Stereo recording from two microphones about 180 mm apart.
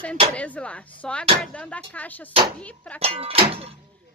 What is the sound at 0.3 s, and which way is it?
Speech, 5° left (ahead or behind).